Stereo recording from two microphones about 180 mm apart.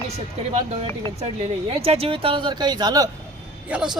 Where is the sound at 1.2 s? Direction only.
35° right (ahead or behind).